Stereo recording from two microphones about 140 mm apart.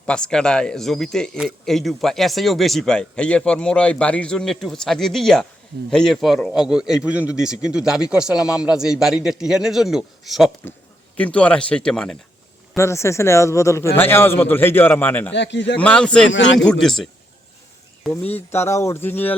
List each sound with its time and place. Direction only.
0.0 s a man's voice: 5° left (ahead or behind)
11.2 s a man's voice: 10° left (ahead or behind)
12.7 s a man's voice: 20° left (ahead or behind); by 17.1 s 5° left (ahead or behind)
18.1 s a man's voice: 15° left (ahead or behind)